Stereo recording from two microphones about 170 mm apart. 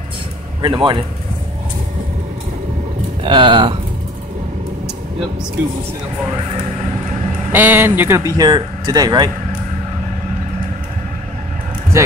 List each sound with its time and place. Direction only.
0.6 s speech: 25° right (ahead or behind)
3.3 s speech: 30° right (ahead or behind)
7.5 s speech: 10° right (ahead or behind)
8.4 s speech: 25° right (ahead or behind)